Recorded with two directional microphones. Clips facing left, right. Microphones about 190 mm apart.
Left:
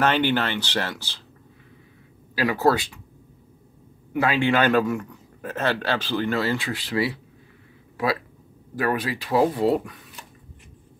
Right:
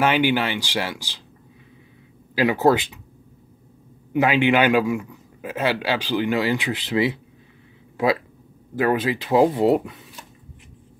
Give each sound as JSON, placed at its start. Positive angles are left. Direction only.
{"t": 0.0, "sound": "a man's voice", "side_deg": -10}
{"t": 2.3, "sound": "speech", "side_deg": -20}
{"t": 4.1, "sound": "a man's voice", "side_deg": -20}
{"t": 8.7, "sound": "speech", "side_deg": -25}